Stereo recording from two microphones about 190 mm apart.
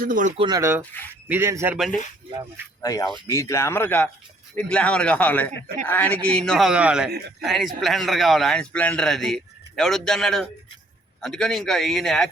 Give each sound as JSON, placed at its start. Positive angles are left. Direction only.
{"t": 0.0, "sound": "speech", "side_deg": -45}
{"t": 0.3, "sound": "speech", "side_deg": -20}
{"t": 2.8, "sound": "a man's voice", "side_deg": 20}